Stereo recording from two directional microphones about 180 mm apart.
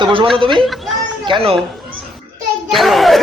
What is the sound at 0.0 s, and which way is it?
Speech, 30° right (ahead or behind).